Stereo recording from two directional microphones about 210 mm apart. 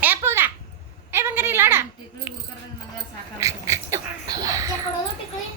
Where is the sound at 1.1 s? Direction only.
10° right (ahead or behind).